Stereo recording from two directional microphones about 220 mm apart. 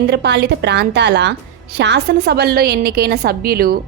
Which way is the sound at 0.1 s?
50° right (ahead or behind).